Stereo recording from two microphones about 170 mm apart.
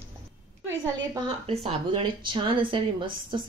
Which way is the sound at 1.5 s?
35° right (ahead or behind).